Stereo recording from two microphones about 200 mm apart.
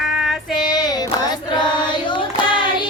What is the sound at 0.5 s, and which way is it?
Child singing, 20° left (ahead or behind).